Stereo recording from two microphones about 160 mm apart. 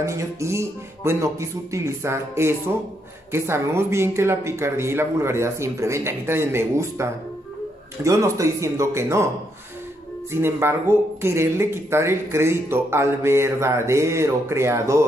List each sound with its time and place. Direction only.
0.0 s speech: 20° right (ahead or behind)
10.3 s speech: 15° right (ahead or behind)